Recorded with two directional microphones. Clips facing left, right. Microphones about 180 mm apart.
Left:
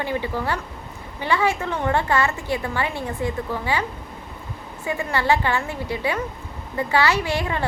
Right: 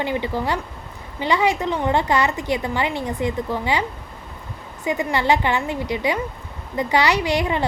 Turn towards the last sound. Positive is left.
turn(degrees=-15)  # may be behind; listen again after turning